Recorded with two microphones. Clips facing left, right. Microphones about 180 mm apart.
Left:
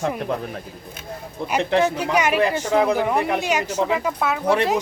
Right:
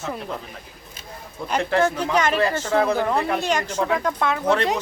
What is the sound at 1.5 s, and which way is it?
Speech, 20° left (ahead or behind).